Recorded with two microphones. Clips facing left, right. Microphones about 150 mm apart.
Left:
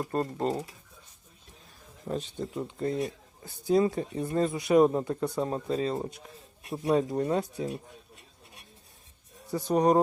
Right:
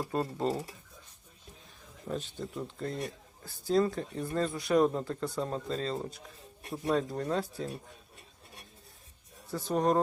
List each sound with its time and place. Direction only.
0.0 s speech: centre (ahead or behind)
2.0 s speech: centre (ahead or behind)
3.0 s speech: 20° left (ahead or behind)
3.8 s speech: 5° left (ahead or behind)
9.5 s speech: centre (ahead or behind)